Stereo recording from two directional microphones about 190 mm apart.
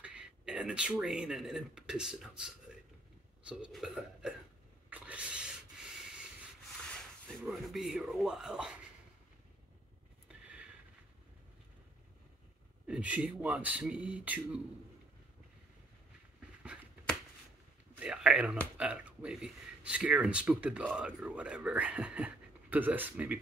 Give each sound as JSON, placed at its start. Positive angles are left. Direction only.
{"t": 0.0, "sound": "speech", "side_deg": -5}
{"t": 4.8, "sound": "a sound", "side_deg": -5}
{"t": 6.9, "sound": "speech", "side_deg": 0}
{"t": 10.2, "sound": "a sound", "side_deg": -5}
{"t": 12.8, "sound": "speech", "side_deg": -5}
{"t": 17.9, "sound": "speech", "side_deg": -5}